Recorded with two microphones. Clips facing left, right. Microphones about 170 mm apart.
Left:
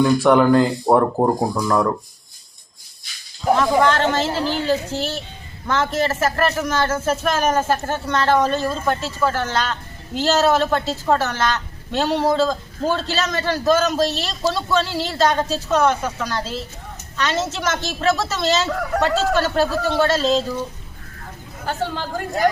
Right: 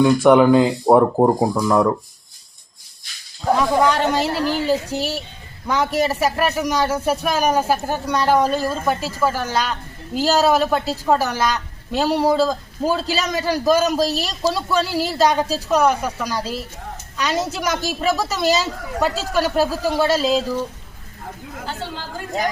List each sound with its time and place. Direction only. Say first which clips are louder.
0.3 s speech: right 3 dB; 10° right (ahead or behind)
3.8 s speech: even; 10° right (ahead or behind)
18.7 s speech: left 7 dB; 70° left (ahead or behind)
19.0 s speech: even; 10° right (ahead or behind)
21.7 s speech: left 7 dB; 55° left (ahead or behind)